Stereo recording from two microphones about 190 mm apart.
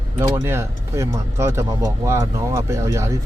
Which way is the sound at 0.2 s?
15° right (ahead or behind).